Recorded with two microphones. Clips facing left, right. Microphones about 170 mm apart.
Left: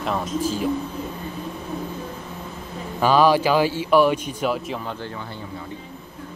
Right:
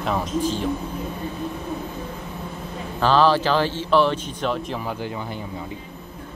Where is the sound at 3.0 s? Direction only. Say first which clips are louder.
Left 1 dB; 10° left (ahead or behind).